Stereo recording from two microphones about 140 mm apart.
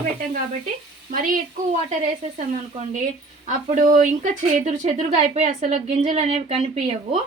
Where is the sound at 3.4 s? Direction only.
60° right (ahead or behind).